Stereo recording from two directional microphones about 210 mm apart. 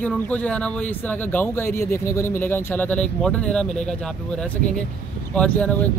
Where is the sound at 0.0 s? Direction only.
5° left (ahead or behind).